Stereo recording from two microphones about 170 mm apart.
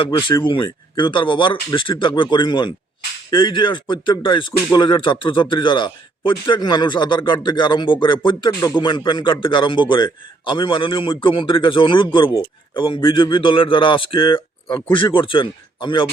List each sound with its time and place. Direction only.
0.0 s a man's voice: 30° left (ahead or behind)